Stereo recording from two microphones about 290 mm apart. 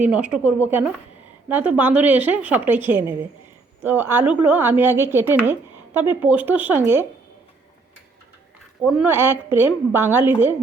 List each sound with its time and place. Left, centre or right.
0.0 s a woman's voice: centre
8.8 s speech: centre